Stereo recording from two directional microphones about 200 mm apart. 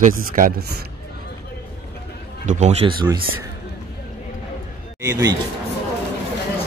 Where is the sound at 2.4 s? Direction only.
35° right (ahead or behind).